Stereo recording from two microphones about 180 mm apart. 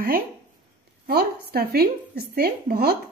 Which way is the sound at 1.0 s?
60° right (ahead or behind).